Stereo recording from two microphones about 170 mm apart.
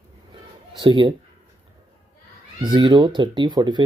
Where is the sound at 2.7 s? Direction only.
25° right (ahead or behind).